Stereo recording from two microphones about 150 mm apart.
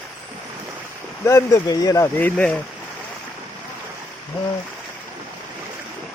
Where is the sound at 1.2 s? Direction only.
20° left (ahead or behind).